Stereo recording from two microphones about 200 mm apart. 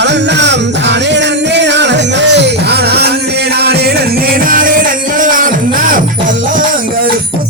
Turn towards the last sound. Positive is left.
turn(degrees=-45)  # may be behind; listen again after turning